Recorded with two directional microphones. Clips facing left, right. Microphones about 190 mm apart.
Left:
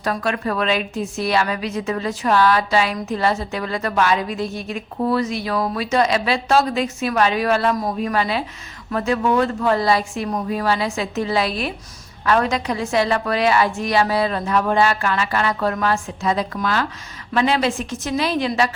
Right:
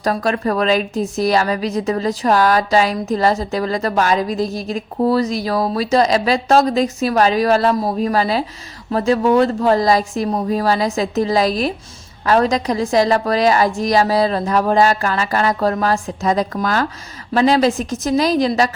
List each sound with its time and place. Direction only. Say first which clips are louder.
0.0 s a woman's voice: right 4 dB; 40° right (ahead or behind)